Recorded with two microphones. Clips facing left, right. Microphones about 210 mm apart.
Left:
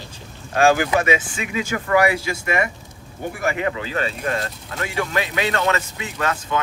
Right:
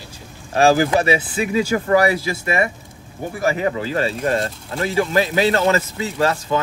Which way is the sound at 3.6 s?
35° right (ahead or behind).